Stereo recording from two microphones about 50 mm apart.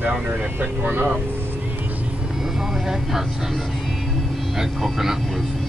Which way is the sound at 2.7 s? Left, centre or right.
Centre.